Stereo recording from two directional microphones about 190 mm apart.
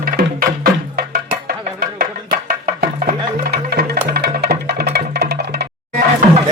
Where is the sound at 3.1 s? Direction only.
55° right (ahead or behind).